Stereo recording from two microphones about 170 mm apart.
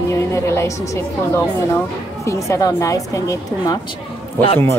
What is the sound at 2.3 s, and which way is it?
A woman's voice, 15° left (ahead or behind).